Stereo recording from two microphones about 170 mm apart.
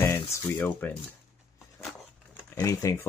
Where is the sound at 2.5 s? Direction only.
20° left (ahead or behind).